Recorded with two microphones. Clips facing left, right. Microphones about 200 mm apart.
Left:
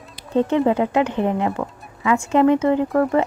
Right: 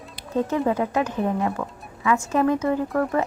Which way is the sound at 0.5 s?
25° left (ahead or behind).